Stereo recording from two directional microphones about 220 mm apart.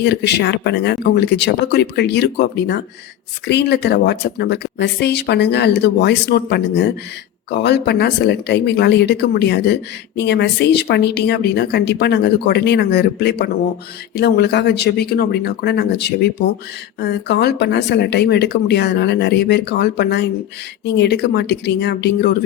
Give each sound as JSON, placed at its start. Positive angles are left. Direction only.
{"t": 0.0, "sound": "speech", "side_deg": 50}